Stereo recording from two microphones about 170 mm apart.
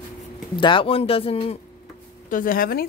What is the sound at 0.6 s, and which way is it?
Speech, 30° left (ahead or behind).